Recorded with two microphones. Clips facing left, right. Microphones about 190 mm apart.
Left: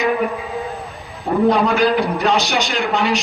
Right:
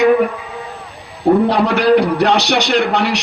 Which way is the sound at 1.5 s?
70° right (ahead or behind).